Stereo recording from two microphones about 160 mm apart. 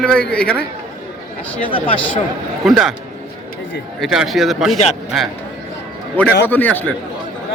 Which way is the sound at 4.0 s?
Centre (ahead or behind).